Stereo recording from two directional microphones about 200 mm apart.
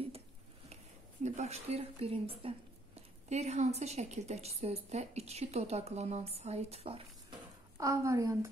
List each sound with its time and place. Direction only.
1.2 s a woman's voice: 35° right (ahead or behind)
7.7 s a woman's voice: 15° right (ahead or behind)